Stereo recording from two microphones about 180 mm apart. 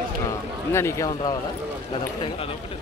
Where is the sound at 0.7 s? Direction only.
15° left (ahead or behind).